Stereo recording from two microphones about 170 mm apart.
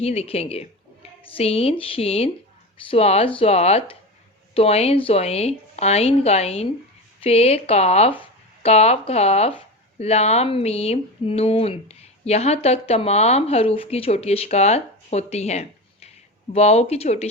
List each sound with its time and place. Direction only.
0.0 s speech: 35° left (ahead or behind)